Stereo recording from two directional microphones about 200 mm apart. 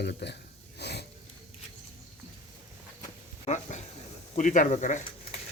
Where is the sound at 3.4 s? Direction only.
35° left (ahead or behind).